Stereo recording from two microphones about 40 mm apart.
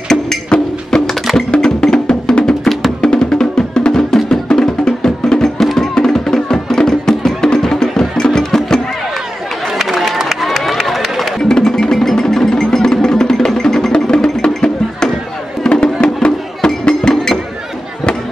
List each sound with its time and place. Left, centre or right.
0.5 s music: centre
5.6 s music: centre
9.8 s a sound: centre
10.6 s run: centre
11.1 s music: centre
14.4 s music: left